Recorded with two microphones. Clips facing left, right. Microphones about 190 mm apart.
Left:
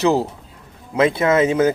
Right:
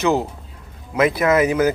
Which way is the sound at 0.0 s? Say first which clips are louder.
Left 2 dB; 35° left (ahead or behind).